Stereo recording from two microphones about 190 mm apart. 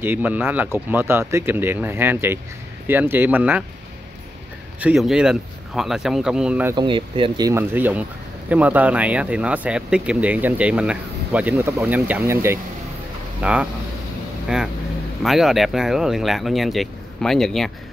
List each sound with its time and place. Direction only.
0.0 s speech: 10° right (ahead or behind)
4.7 s speech: 5° right (ahead or behind)
6.7 s speech: 25° right (ahead or behind); by 17.6 s centre (ahead or behind)